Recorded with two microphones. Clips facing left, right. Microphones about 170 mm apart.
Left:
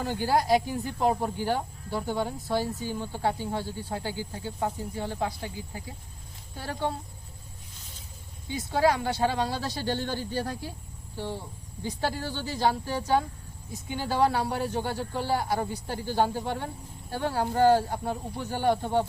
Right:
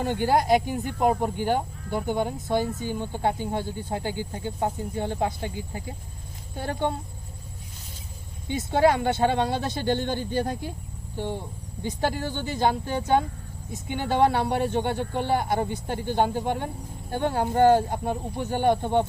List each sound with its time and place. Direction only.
0.0 s speech: 20° right (ahead or behind)
8.4 s speech: 25° right (ahead or behind)